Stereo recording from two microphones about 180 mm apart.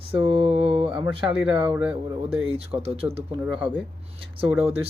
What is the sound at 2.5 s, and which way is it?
Speech, 35° right (ahead or behind).